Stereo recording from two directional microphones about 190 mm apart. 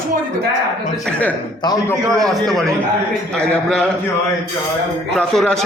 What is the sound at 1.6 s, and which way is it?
Speech, 20° left (ahead or behind).